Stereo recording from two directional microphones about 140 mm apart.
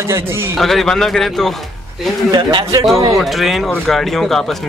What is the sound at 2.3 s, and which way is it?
Speech, 30° right (ahead or behind).